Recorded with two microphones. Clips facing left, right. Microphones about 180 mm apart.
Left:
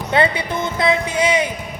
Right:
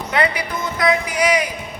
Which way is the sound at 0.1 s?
25° left (ahead or behind).